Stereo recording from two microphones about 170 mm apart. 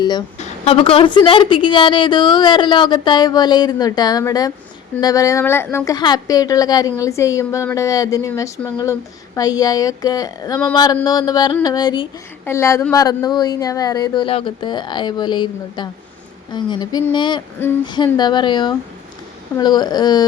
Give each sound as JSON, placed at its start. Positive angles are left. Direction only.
{"t": 0.0, "sound": "a woman's voice", "side_deg": 25}